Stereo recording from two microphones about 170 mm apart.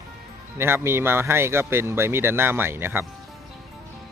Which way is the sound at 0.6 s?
15° right (ahead or behind).